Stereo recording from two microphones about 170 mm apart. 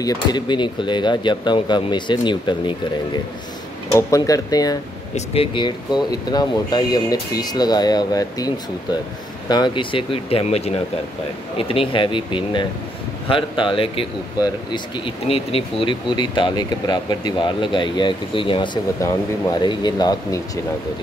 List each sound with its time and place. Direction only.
0.0 s speech: 25° left (ahead or behind)
3.9 s speech: 20° left (ahead or behind)
5.1 s speech: 35° left (ahead or behind)
9.5 s speech: 25° left (ahead or behind)
18.9 s speech: 15° left (ahead or behind)